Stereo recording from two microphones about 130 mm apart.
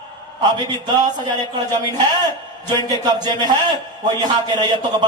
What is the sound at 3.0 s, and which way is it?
Speech, 30° right (ahead or behind).